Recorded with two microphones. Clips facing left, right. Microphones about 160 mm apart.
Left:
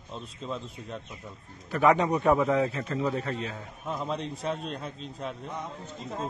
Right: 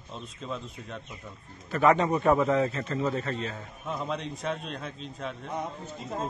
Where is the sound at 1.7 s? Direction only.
15° left (ahead or behind).